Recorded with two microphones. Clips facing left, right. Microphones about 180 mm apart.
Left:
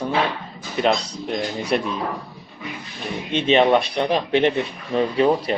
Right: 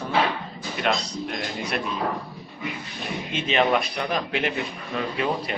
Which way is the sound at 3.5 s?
25° left (ahead or behind).